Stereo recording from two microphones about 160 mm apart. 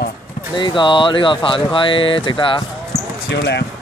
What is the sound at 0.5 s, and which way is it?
Speech, 30° left (ahead or behind).